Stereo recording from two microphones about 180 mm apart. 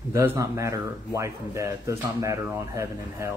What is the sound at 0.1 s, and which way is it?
Speech, 15° right (ahead or behind).